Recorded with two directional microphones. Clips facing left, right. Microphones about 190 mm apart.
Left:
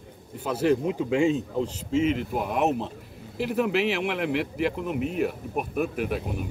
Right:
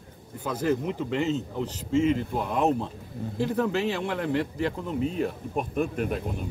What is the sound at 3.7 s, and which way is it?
Speech, 90° left.